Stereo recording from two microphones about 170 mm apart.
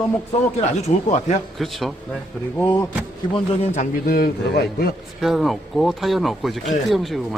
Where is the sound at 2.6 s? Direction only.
10° left (ahead or behind).